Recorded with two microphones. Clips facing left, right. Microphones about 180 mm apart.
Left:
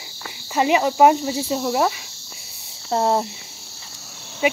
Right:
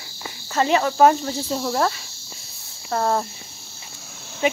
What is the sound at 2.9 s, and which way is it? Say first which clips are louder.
Speech: left 2 dB; 20° left (ahead or behind).